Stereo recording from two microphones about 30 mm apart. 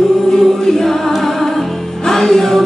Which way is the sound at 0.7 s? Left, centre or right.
Centre.